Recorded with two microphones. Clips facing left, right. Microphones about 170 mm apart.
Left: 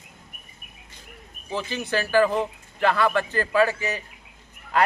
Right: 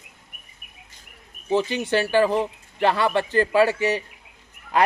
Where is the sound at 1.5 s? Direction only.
25° right (ahead or behind).